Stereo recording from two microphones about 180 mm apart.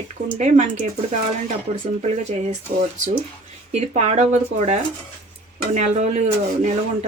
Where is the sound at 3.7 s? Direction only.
35° right (ahead or behind).